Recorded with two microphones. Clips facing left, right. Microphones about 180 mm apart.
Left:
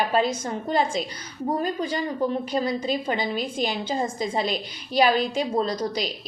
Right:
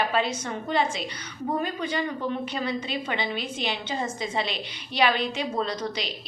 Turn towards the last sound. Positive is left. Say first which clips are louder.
# left 4 dB
turn(degrees=40)  # may be behind; listen again after turning